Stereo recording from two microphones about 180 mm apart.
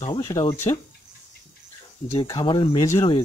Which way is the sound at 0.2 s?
15° left (ahead or behind).